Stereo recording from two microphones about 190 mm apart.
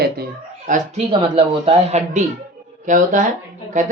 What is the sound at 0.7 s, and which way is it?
Speech, 35° right (ahead or behind).